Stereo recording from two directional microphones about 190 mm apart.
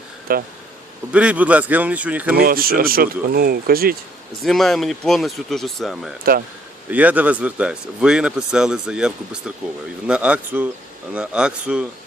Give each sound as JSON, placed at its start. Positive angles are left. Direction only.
{"t": 0.3, "sound": "speech", "side_deg": -50}
{"t": 1.1, "sound": "speech", "side_deg": -5}
{"t": 2.3, "sound": "speech", "side_deg": -50}
{"t": 4.4, "sound": "speech", "side_deg": 0}